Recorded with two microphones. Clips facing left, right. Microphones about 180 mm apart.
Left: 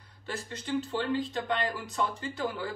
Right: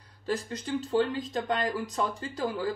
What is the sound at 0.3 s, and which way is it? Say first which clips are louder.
Speech: right 3 dB; 35° right (ahead or behind).